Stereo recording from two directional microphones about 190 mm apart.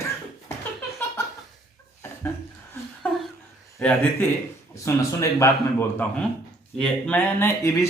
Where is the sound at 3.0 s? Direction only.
10° left (ahead or behind).